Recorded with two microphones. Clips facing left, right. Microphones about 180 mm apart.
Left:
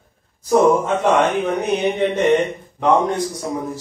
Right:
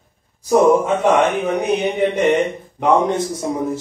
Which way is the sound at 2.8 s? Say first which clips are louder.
Right 1 dB; 20° right (ahead or behind).